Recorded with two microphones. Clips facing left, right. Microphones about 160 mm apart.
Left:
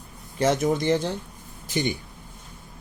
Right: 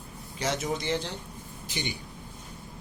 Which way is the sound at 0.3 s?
50° left (ahead or behind).